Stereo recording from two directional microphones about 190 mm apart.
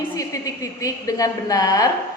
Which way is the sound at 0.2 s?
15° left (ahead or behind).